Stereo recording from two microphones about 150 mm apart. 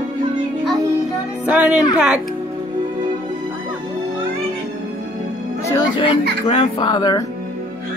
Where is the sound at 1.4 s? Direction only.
10° right (ahead or behind).